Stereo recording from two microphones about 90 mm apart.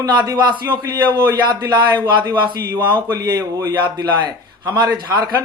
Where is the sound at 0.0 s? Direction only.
55° right (ahead or behind).